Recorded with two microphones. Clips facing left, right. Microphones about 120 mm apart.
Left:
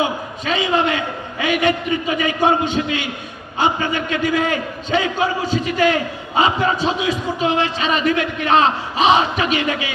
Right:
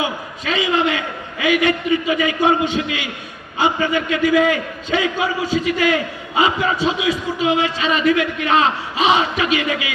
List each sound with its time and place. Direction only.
0.4 s a man's voice: 25° left (ahead or behind)